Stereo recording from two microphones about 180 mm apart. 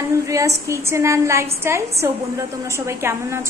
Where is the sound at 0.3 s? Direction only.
15° right (ahead or behind).